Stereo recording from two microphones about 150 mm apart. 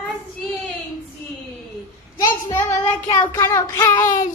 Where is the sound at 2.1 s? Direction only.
20° left (ahead or behind).